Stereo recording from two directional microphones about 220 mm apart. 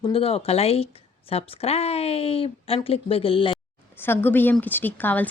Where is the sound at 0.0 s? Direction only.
25° left (ahead or behind).